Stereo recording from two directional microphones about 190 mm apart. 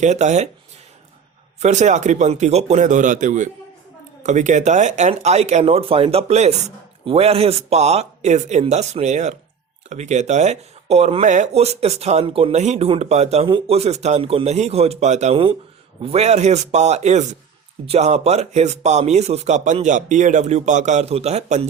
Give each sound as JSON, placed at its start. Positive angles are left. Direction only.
{"t": 0.0, "sound": "speech", "side_deg": -40}
{"t": 1.6, "sound": "speech", "side_deg": -40}